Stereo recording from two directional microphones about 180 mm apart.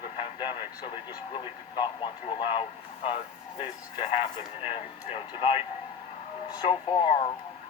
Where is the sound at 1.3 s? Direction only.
25° left (ahead or behind).